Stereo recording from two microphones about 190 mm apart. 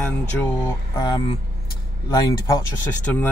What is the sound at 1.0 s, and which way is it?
Speech, 20° left (ahead or behind).